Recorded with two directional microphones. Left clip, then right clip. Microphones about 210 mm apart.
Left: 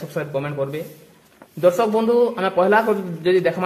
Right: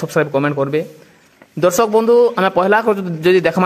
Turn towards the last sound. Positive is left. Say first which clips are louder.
# right 5 dB
turn(degrees=-40)  # may be behind; listen again after turning